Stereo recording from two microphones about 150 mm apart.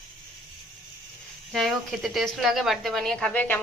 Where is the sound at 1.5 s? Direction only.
Centre (ahead or behind).